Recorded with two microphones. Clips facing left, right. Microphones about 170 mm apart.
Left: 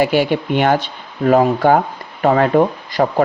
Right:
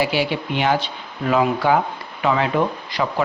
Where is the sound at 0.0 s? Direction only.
50° left (ahead or behind).